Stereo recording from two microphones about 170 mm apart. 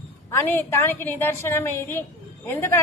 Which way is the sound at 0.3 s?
15° left (ahead or behind).